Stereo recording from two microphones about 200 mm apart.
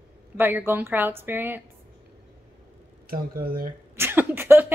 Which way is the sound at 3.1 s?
50° right (ahead or behind).